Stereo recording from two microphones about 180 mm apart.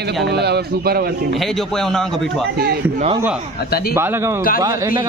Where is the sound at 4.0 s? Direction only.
15° right (ahead or behind).